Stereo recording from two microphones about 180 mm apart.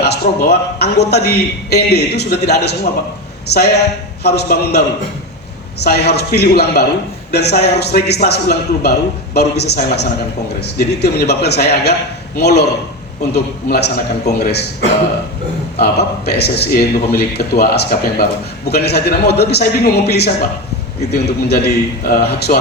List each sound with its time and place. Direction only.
0.0 s a man's voice: 65° left (ahead or behind)
5.8 s a man's voice: 65° left (ahead or behind)
15.8 s a man's voice: 65° left (ahead or behind)